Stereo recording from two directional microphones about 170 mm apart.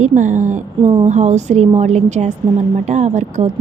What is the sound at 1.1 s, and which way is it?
A woman's voice, 45° right (ahead or behind).